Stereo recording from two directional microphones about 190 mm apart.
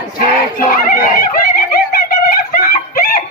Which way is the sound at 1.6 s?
50° left (ahead or behind).